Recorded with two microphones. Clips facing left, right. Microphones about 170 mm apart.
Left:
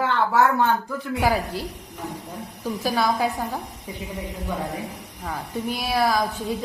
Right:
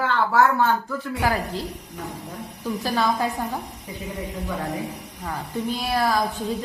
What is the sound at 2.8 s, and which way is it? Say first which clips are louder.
Speech: left 1 dB; 10° left (ahead or behind).